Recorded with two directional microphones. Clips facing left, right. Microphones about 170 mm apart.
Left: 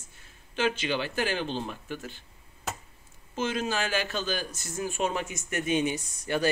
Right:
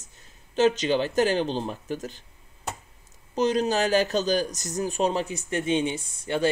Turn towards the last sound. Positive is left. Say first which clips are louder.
# right 2 dB
turn(degrees=-25)  # may be behind; listen again after turning